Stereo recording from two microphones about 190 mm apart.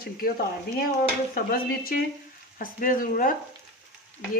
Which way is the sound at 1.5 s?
50° left (ahead or behind).